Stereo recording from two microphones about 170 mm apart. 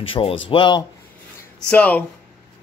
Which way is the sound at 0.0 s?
35° left (ahead or behind).